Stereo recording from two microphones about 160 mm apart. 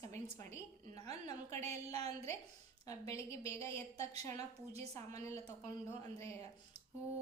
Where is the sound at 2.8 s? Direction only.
20° left (ahead or behind).